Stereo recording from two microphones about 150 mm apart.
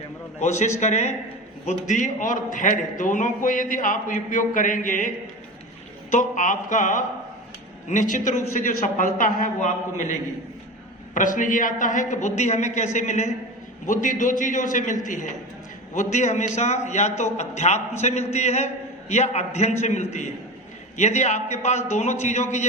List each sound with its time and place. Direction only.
0.3 s a woman's voice: 50° left (ahead or behind)